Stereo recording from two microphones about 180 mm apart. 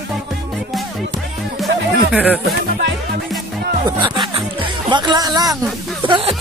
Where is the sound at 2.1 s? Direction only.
5° right (ahead or behind).